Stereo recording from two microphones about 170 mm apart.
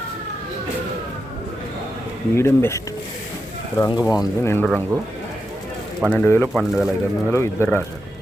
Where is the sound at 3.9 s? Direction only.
25° left (ahead or behind).